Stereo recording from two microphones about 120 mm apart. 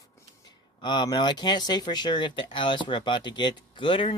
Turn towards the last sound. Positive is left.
turn(degrees=45)  # may be behind; listen again after turning